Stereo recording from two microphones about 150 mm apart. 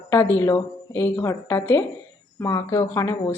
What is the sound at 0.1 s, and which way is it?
A woman's voice, 15° left (ahead or behind).